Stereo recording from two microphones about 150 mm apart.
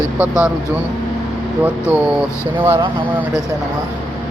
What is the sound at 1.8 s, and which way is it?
Speech, 10° right (ahead or behind).